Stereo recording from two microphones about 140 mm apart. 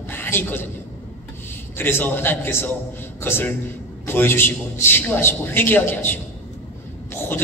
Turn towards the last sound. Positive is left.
turn(degrees=15)  # may be behind; listen again after turning